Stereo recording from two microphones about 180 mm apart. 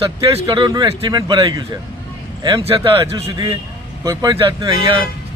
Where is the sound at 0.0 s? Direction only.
25° right (ahead or behind).